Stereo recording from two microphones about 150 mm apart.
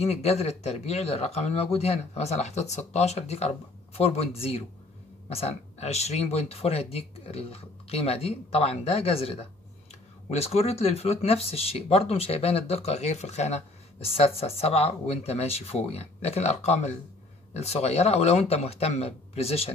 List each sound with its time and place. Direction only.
0.0 s speech: 45° left (ahead or behind)